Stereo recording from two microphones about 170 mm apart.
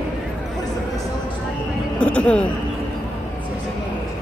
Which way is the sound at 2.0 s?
10° left (ahead or behind).